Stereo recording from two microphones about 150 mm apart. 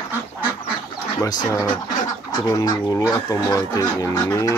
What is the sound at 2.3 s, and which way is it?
Speech, 25° left (ahead or behind).